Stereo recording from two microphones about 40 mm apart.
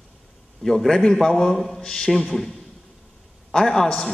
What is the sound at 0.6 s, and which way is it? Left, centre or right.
A man's voice, centre.